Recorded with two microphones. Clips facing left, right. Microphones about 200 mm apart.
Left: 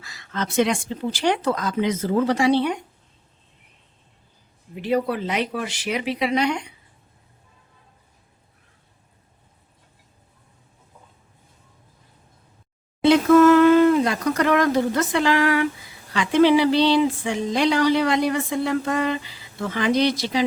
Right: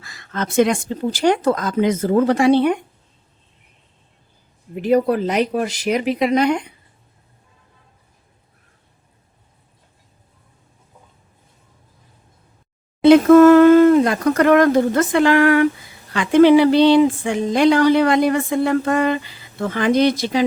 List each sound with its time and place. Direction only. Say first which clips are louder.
0.0 s speech: right 3 dB; 50° right (ahead or behind)
4.7 s speech: right 6 dB; 45° right (ahead or behind)
13.1 s speech: right 6 dB; 50° right (ahead or behind)